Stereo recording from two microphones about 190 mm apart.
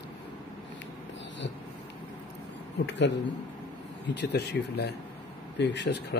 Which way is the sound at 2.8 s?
65° left (ahead or behind).